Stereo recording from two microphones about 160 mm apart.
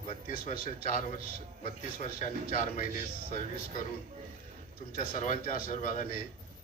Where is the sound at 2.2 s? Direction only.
55° left (ahead or behind).